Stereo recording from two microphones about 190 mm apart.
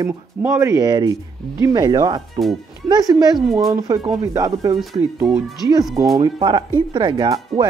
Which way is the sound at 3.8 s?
20° right (ahead or behind).